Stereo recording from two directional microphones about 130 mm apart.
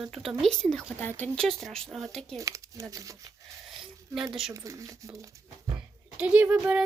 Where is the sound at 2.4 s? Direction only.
25° right (ahead or behind).